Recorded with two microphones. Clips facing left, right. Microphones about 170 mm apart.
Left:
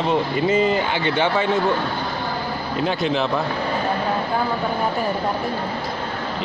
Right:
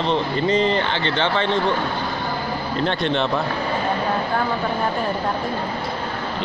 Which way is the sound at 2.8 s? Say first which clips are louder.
Left 1 dB; 5° left (ahead or behind).